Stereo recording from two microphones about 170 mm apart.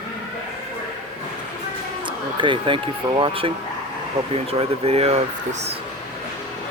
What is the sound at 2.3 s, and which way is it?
Speech, 30° right (ahead or behind).